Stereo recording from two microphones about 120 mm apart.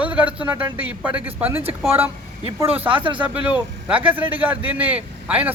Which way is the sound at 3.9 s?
15° right (ahead or behind).